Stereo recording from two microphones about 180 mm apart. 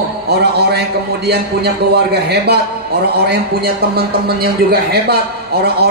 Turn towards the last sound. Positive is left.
turn(degrees=-60)  # may be behind; listen again after turning